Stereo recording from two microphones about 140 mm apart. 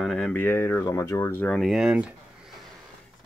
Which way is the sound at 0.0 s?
5° left (ahead or behind).